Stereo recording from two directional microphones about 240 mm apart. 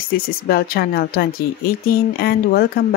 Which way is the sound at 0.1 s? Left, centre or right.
Left.